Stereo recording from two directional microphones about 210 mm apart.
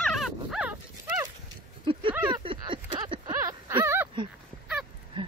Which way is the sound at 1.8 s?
25° right (ahead or behind).